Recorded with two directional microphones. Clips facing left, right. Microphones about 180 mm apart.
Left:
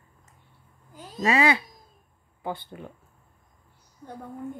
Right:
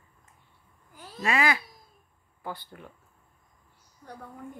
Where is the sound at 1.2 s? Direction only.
30° left (ahead or behind).